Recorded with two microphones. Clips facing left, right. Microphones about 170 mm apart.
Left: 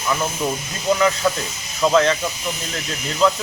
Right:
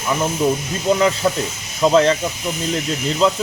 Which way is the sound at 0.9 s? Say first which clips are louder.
Right 2 dB; 30° right (ahead or behind).